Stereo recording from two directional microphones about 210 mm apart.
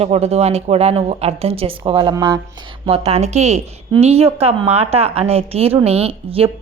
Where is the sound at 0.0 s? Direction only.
30° right (ahead or behind).